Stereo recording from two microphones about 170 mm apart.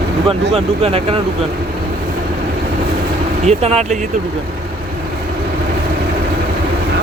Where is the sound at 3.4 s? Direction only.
40° right (ahead or behind).